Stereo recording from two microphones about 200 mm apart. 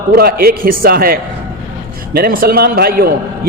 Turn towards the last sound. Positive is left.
turn(degrees=-50)  # may be behind; listen again after turning